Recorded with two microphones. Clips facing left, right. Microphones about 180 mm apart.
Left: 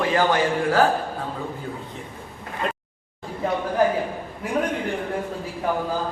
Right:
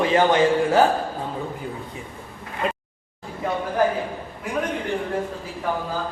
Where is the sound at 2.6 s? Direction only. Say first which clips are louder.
Right 2 dB; 5° right (ahead or behind).